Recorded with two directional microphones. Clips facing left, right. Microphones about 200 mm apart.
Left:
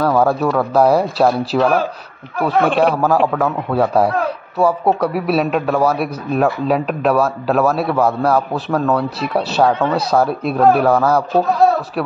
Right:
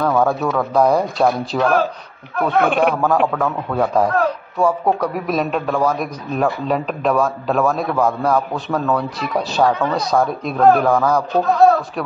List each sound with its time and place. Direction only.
0.0 s a man's voice: 5° left (ahead or behind)
9.7 s speech: 25° left (ahead or behind)
9.9 s a man's voice: 5° left (ahead or behind)